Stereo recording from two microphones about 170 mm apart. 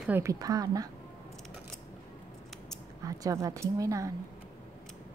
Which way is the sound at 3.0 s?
20° right (ahead or behind).